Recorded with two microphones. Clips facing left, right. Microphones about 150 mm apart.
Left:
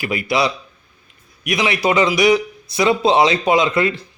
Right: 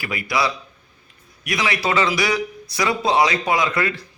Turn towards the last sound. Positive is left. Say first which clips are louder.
# left 5 dB
turn(degrees=25)  # may be behind; listen again after turning